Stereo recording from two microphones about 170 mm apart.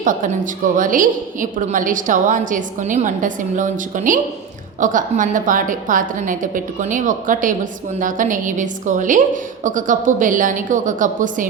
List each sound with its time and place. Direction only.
0.0 s a woman's voice: 50° right (ahead or behind)